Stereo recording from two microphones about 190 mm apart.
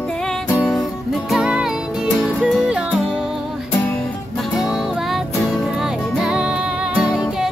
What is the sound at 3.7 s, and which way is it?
Music, 15° left (ahead or behind).